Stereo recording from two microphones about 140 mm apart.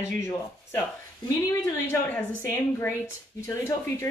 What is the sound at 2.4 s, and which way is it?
A woman's voice, 15° left (ahead or behind).